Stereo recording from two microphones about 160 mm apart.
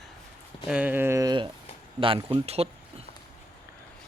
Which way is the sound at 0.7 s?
10° right (ahead or behind).